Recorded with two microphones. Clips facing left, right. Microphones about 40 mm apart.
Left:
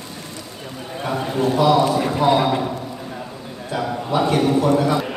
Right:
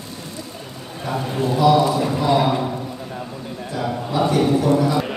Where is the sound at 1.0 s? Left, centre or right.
Left.